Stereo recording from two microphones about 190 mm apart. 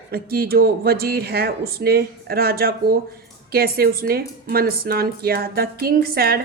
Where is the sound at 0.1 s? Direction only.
55° right (ahead or behind).